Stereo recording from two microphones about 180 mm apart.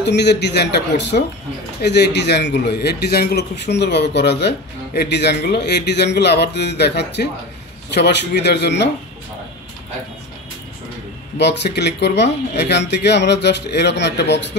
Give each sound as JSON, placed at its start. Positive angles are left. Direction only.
{"t": 0.0, "sound": "a man's voice", "side_deg": 70}
{"t": 11.3, "sound": "a man's voice", "side_deg": 70}